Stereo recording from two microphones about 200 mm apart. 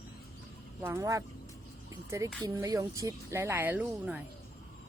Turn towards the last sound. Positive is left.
turn(degrees=-5)  # may be behind; listen again after turning